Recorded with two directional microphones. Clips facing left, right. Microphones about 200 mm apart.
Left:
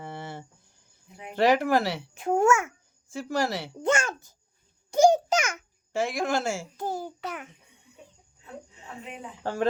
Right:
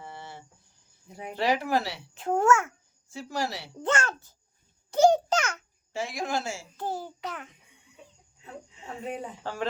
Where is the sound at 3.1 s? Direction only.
50° left (ahead or behind).